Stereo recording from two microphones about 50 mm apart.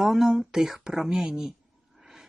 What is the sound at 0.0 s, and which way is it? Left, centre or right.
Speech, centre.